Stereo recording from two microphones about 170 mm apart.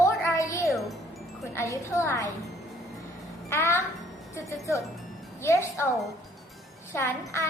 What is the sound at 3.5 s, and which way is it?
Speech, 15° left (ahead or behind).